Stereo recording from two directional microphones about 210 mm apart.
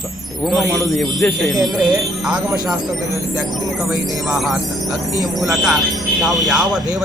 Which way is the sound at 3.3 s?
5° right (ahead or behind).